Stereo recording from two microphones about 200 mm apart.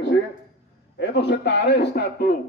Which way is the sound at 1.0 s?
60° left (ahead or behind).